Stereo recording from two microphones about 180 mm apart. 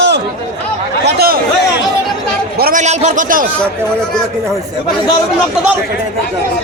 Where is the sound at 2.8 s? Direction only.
40° right (ahead or behind).